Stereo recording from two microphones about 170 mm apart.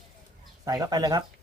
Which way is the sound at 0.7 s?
20° right (ahead or behind).